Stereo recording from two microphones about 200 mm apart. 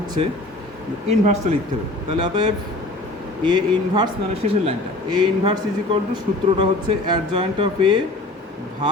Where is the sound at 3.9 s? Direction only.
25° right (ahead or behind).